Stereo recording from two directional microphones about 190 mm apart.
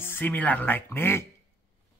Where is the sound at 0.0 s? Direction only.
10° left (ahead or behind).